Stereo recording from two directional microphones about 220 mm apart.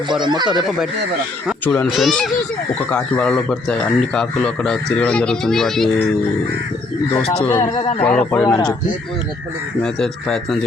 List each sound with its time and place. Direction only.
0.1 s speech: 20° right (ahead or behind)
1.6 s speech: 5° left (ahead or behind)
7.4 s speech: 10° left (ahead or behind)
8.4 s speech: 15° left (ahead or behind)
9.8 s speech: centre (ahead or behind)